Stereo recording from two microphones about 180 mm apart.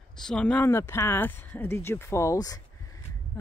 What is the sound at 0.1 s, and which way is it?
Speech, 5° left (ahead or behind).